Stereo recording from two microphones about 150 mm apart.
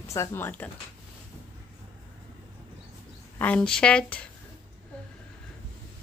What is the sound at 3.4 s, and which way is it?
Speech, 10° left (ahead or behind).